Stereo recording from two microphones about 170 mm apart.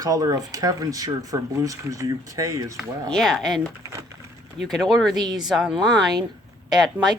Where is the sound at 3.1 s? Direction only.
Centre (ahead or behind).